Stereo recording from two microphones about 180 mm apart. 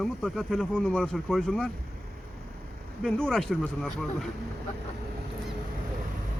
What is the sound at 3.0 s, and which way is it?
Speech, 5° left (ahead or behind).